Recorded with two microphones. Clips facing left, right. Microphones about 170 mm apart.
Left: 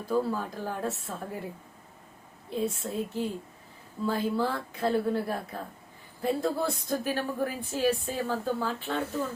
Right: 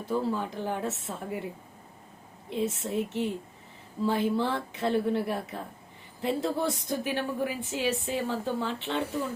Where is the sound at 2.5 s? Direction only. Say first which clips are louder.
Right 1 dB; 20° right (ahead or behind).